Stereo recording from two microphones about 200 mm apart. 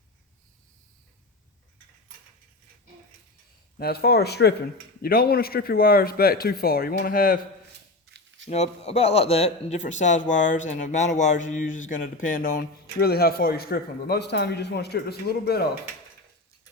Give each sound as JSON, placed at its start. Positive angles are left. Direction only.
{"t": 3.8, "sound": "speech", "side_deg": 50}
{"t": 8.4, "sound": "a man's voice", "side_deg": 35}